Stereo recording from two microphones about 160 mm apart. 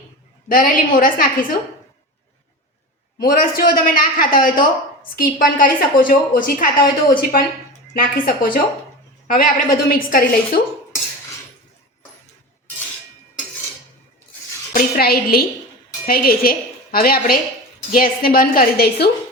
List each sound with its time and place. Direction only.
0.4 s a woman's voice: 60° left (ahead or behind)
3.2 s a woman's voice: 60° left (ahead or behind)
14.8 s a woman's voice: 70° left (ahead or behind)